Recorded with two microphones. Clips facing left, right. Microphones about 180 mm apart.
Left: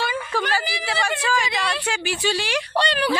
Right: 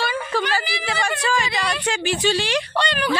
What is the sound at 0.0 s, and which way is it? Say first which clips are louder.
Whimper: right 2 dB; 15° left (ahead or behind).